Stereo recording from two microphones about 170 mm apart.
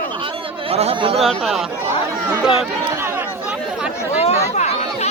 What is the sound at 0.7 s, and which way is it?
Speech, 35° right (ahead or behind).